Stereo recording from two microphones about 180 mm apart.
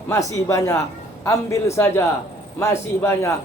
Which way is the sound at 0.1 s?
15° left (ahead or behind).